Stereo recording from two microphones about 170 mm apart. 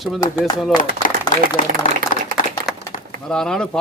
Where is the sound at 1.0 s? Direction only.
55° left (ahead or behind).